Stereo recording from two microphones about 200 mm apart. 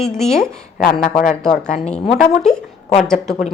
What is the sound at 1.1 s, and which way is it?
Speech, 45° left (ahead or behind).